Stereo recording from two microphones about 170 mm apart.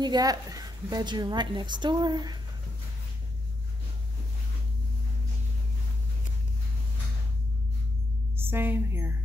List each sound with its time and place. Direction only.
0.0 s a woman's voice: 25° right (ahead or behind)
8.4 s a woman's voice: 15° right (ahead or behind)